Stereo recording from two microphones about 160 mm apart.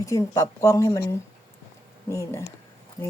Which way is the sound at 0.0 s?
20° left (ahead or behind).